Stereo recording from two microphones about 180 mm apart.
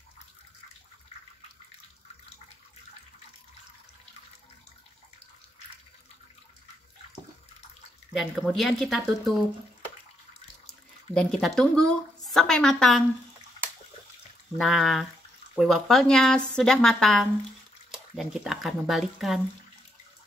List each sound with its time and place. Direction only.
8.1 s a woman's voice: centre (ahead or behind)
10.7 s speech: 5° left (ahead or behind)
14.6 s a woman's voice: centre (ahead or behind)